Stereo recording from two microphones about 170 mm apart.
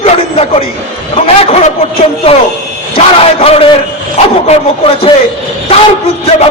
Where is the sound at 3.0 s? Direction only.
35° left (ahead or behind).